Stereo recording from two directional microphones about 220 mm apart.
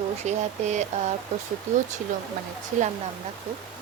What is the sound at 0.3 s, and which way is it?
Speech, 30° right (ahead or behind).